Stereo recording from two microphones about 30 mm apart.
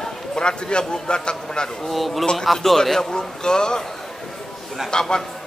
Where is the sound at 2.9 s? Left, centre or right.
Left.